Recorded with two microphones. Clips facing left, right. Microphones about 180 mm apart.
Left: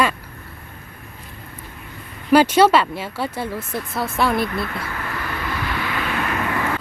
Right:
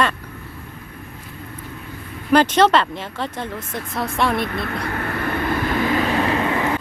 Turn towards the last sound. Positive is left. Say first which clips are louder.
# right 3 dB
turn(degrees=-20)  # may be behind; listen again after turning